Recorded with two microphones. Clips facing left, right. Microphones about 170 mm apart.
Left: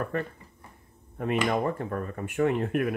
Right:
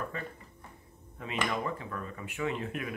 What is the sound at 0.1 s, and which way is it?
Speech, 60° left (ahead or behind).